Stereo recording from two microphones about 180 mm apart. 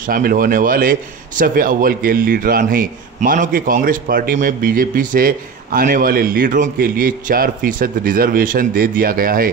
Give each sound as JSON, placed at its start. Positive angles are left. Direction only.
{"t": 0.0, "sound": "a man's voice", "side_deg": -50}